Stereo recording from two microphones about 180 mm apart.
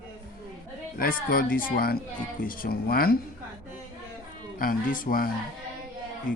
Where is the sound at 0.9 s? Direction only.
50° left (ahead or behind).